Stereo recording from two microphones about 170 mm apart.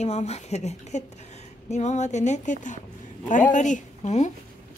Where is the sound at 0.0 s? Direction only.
40° left (ahead or behind).